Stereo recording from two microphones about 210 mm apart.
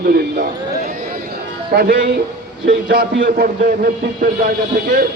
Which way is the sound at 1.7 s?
45° right (ahead or behind).